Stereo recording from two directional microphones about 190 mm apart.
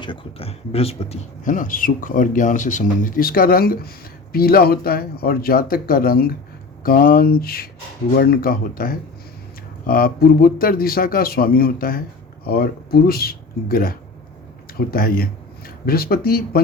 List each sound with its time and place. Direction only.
0.0 s speech: 30° left (ahead or behind); by 16.6 s 50° left (ahead or behind)